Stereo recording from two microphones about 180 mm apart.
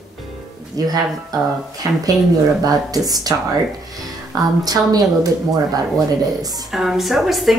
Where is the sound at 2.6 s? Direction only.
20° right (ahead or behind).